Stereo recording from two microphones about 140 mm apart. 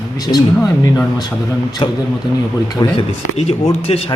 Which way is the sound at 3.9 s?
45° left (ahead or behind).